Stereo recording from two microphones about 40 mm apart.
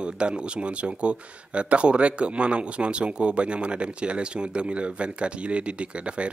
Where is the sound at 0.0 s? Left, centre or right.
Right.